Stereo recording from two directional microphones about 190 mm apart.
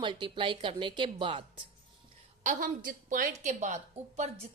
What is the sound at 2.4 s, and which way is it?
A woman's voice, 45° right (ahead or behind).